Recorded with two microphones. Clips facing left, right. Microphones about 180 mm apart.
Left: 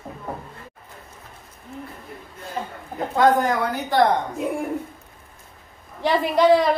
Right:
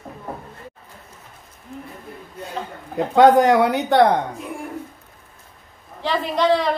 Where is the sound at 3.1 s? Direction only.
75° right (ahead or behind).